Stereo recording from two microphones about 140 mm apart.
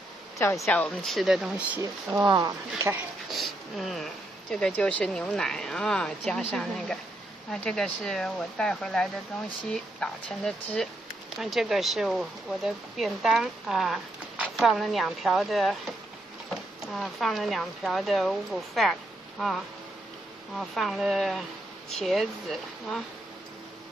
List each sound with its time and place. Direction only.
0.4 s speech: 20° left (ahead or behind); by 1.8 s 5° right (ahead or behind)
2.1 s speech: 30° right (ahead or behind)
3.3 s speech: centre (ahead or behind)
16.8 s speech: centre (ahead or behind)
20.5 s speech: centre (ahead or behind)